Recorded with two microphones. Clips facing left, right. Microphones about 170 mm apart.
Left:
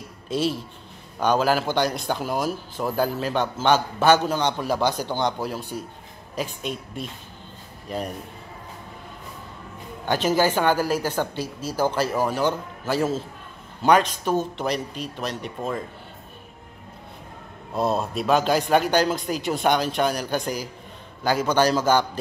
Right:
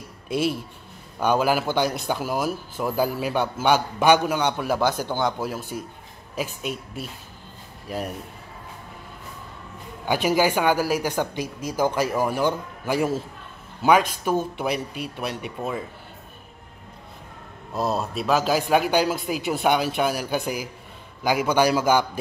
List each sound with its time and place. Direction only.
0.3 s a man's voice: 10° right (ahead or behind)
4.7 s a man's voice: 15° left (ahead or behind)
5.2 s a man's voice: 5° right (ahead or behind)
10.0 s a man's voice: 10° right (ahead or behind)
17.7 s a man's voice: centre (ahead or behind)